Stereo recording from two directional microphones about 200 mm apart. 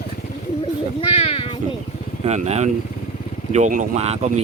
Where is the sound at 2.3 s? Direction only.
35° right (ahead or behind).